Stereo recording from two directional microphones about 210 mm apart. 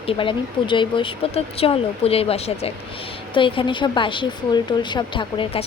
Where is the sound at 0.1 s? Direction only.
25° left (ahead or behind).